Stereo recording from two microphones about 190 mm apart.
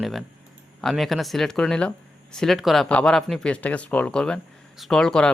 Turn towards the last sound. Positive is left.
turn(degrees=5)  # may be behind; listen again after turning